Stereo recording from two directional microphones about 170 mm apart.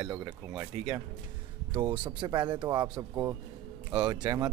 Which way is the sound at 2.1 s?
25° right (ahead or behind).